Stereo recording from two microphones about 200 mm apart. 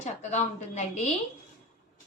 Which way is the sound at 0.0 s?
35° left (ahead or behind).